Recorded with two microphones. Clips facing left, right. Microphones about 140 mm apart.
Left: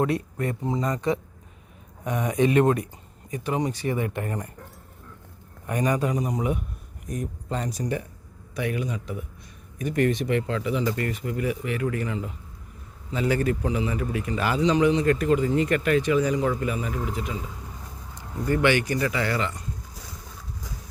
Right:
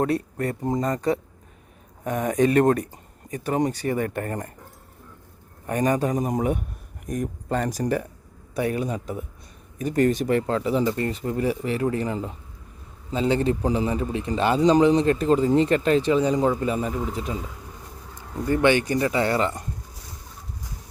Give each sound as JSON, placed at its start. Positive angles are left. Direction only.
{"t": 0.0, "sound": "speech", "side_deg": -40}
{"t": 5.6, "sound": "speech", "side_deg": -40}
{"t": 14.6, "sound": "speech", "side_deg": -35}
{"t": 18.4, "sound": "speech", "side_deg": -20}